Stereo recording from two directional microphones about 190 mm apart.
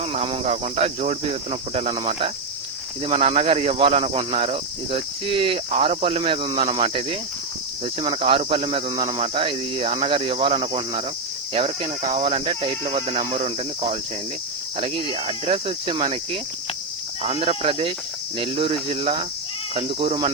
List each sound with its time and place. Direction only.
0.0 s speech: 30° right (ahead or behind)
17.2 s speech: 35° right (ahead or behind)